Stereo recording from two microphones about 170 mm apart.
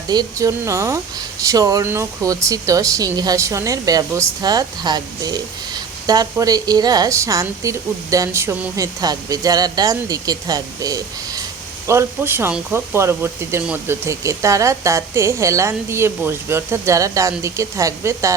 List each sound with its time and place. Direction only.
0.1 s speech: 20° right (ahead or behind)